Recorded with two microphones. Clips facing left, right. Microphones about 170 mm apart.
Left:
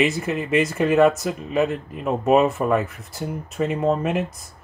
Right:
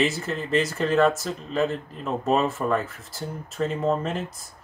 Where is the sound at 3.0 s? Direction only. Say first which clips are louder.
Left 4 dB; centre (ahead or behind).